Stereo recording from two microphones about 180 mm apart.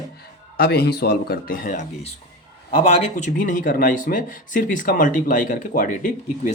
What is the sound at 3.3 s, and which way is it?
Speech, 50° left (ahead or behind).